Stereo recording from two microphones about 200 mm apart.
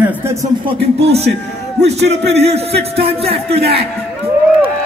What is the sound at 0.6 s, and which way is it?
A man's voice, 30° right (ahead or behind).